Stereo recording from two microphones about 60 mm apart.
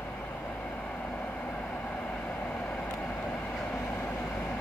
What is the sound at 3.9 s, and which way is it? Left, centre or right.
Vehicle, left.